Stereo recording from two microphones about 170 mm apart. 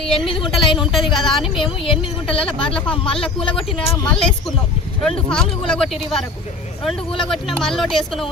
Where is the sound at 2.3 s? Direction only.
30° left (ahead or behind).